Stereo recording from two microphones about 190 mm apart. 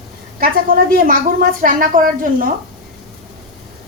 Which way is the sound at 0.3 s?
50° right (ahead or behind).